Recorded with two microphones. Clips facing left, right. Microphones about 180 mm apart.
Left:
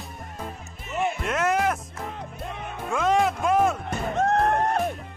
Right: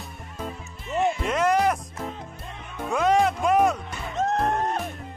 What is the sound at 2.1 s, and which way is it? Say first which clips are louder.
Music: left 3 dB; 60° left (ahead or behind).